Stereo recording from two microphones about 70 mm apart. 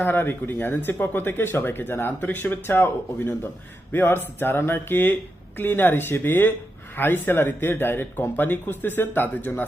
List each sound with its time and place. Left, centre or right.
0.0 s speech: left